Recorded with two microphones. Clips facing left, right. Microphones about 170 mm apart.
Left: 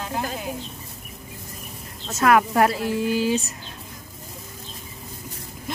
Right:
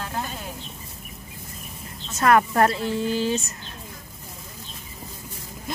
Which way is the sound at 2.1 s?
5° left (ahead or behind).